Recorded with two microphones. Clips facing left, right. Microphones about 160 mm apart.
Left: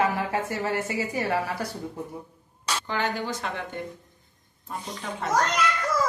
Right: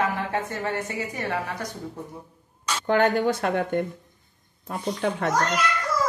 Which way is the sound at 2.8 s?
55° right (ahead or behind).